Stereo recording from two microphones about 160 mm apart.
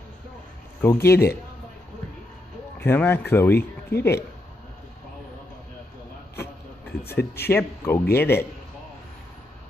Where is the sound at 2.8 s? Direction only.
15° left (ahead or behind).